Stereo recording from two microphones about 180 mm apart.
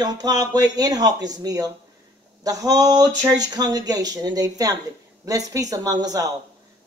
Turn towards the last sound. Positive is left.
turn(degrees=-20)  # may be behind; listen again after turning